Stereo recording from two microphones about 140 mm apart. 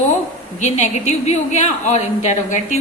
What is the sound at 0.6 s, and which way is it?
A woman's voice, 60° left (ahead or behind).